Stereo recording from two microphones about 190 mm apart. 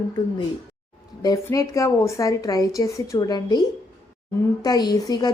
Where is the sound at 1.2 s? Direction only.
20° left (ahead or behind).